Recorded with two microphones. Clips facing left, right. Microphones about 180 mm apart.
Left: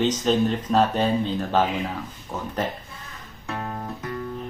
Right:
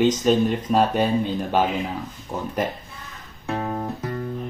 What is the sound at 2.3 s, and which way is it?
Speech, 25° right (ahead or behind).